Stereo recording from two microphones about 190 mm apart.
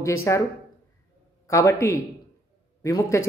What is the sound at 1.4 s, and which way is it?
A woman's voice, 15° left (ahead or behind).